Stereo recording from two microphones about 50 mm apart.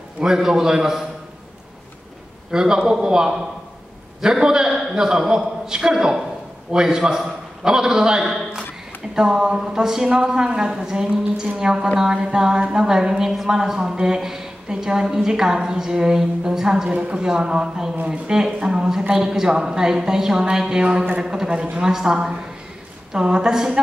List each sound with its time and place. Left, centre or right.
0.2 s a woman's voice: centre
2.5 s a woman's voice: centre
16.9 s speech: right
17.2 s a woman's voice: centre
18.0 s a woman's voice: right